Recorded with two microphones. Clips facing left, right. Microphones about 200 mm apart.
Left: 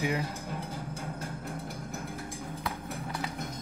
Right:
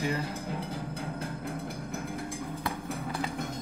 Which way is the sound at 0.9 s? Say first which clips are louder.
Right 2 dB; 55° right (ahead or behind).